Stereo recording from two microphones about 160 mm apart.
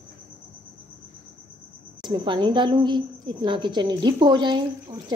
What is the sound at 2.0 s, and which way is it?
A woman's voice, 30° right (ahead or behind).